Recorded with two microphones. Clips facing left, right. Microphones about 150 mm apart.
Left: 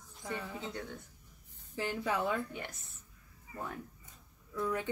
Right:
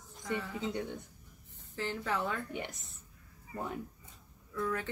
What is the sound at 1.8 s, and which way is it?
Speech, 15° left (ahead or behind).